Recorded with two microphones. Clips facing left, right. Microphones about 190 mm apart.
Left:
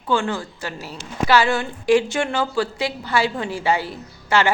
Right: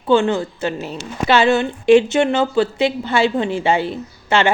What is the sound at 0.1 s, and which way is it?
A woman's voice, 20° right (ahead or behind).